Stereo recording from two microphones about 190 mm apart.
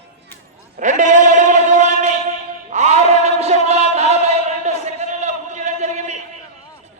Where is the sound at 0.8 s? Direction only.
40° right (ahead or behind).